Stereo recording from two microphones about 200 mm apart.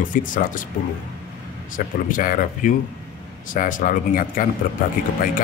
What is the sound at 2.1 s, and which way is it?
A man's voice, 45° left (ahead or behind).